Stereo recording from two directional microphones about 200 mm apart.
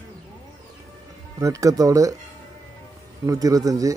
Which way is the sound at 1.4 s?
15° right (ahead or behind).